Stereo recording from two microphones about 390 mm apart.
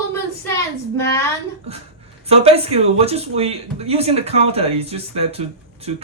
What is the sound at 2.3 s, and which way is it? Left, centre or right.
Speech, centre.